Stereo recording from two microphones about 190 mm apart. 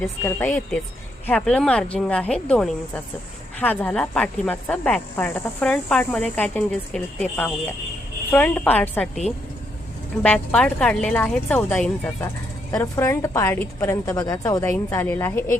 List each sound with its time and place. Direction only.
0.0 s speech: 10° left (ahead or behind)
10.2 s speech: 5° left (ahead or behind)